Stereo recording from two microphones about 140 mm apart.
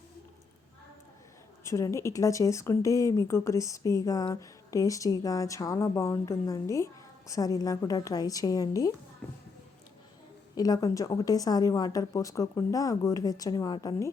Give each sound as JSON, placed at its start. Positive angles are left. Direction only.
{"t": 1.6, "sound": "speech", "side_deg": 20}
{"t": 9.2, "sound": "speech", "side_deg": 10}
{"t": 10.6, "sound": "speech", "side_deg": 25}